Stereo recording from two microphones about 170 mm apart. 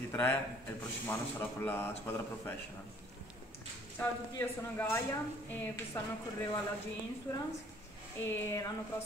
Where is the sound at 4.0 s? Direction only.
15° left (ahead or behind).